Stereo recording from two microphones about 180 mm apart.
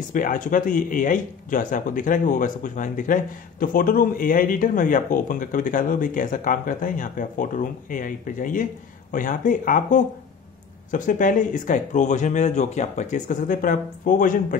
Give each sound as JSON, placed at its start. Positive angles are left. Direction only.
{"t": 0.1, "sound": "speech", "side_deg": 50}